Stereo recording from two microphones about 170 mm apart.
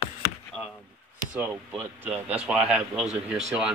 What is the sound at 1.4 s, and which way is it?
Speech, 10° right (ahead or behind).